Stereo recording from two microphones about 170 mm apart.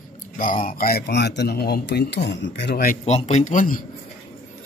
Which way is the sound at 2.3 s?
90° left.